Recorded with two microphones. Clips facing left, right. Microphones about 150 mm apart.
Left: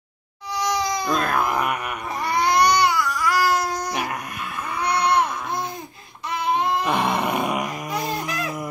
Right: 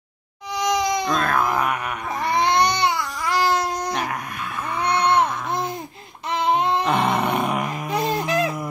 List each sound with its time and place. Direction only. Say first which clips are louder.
0.6 s crying: right 3 dB; 20° right (ahead or behind)
1.0 s groan: right 1 dB; 5° left (ahead or behind)
2.2 s baby cry: even; 20° right (ahead or behind)
4.8 s a sound: right 1 dB; 25° right (ahead or behind)
6.5 s music: right 1 dB; 25° right (ahead or behind)
6.8 s grunt: right 2 dB; 5° left (ahead or behind)
7.9 s music: right 8 dB; 25° right (ahead or behind)